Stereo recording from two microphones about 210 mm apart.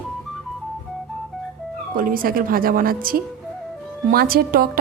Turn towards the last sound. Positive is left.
turn(degrees=-45)  # may be behind; listen again after turning